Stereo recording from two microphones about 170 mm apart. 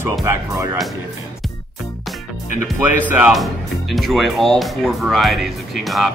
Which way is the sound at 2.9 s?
10° right (ahead or behind).